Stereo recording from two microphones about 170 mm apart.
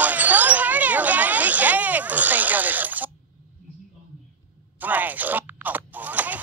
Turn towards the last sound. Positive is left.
turn(degrees=-10)  # may be behind; listen again after turning